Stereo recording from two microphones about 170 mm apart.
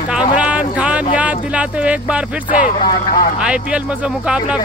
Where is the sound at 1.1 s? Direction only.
10° right (ahead or behind).